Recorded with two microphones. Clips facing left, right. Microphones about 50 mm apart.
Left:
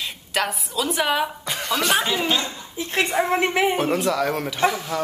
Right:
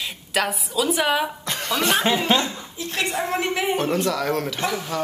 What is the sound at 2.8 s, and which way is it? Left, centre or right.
Speech, left.